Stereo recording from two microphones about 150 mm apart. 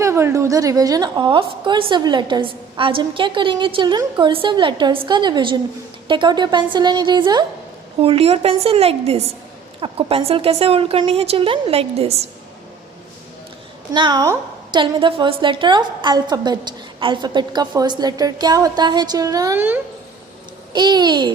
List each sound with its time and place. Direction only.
0.0 s a woman's voice: 20° right (ahead or behind)
8.0 s a woman's voice: 40° right (ahead or behind)
13.9 s a woman's voice: 30° right (ahead or behind); by 19.8 s 15° right (ahead or behind)
20.7 s a woman's voice: 30° right (ahead or behind)